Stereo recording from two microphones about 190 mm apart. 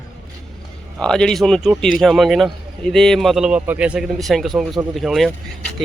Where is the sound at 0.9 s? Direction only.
5° left (ahead or behind).